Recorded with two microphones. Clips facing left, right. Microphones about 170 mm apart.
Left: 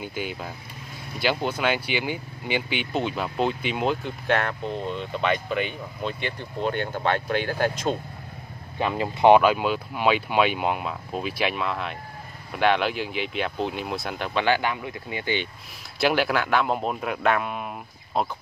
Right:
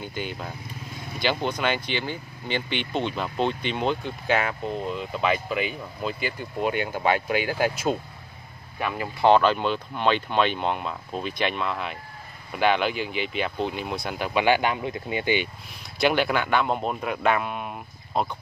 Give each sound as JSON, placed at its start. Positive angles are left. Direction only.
{"t": 0.0, "sound": "speech", "side_deg": 5}
{"t": 8.7, "sound": "speech", "side_deg": 25}
{"t": 9.3, "sound": "speech", "side_deg": 10}
{"t": 16.0, "sound": "speech", "side_deg": 0}